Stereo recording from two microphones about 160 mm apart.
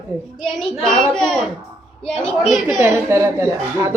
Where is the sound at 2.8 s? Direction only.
15° right (ahead or behind).